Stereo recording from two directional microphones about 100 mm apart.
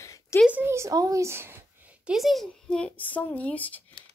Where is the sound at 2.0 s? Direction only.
Centre (ahead or behind); by 3.8 s 15° left (ahead or behind).